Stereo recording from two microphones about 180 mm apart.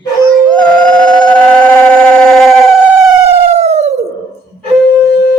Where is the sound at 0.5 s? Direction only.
5° left (ahead or behind).